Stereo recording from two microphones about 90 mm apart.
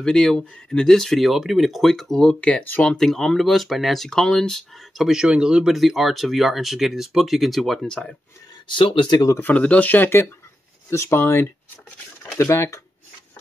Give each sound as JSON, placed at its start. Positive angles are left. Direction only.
{"t": 0.0, "sound": "speech", "side_deg": 5}
{"t": 2.8, "sound": "speech", "side_deg": 5}
{"t": 8.6, "sound": "speech", "side_deg": 65}
{"t": 9.4, "sound": "speech", "side_deg": 15}